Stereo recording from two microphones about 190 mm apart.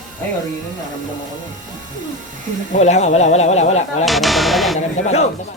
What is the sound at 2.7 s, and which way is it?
Speech, 35° left (ahead or behind).